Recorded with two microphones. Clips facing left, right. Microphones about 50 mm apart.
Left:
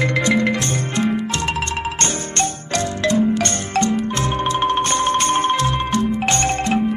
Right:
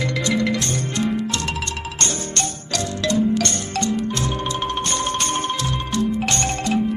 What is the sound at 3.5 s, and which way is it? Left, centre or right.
Music, left.